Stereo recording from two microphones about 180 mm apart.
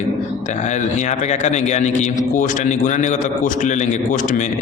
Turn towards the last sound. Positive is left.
turn(degrees=45)  # may be behind; listen again after turning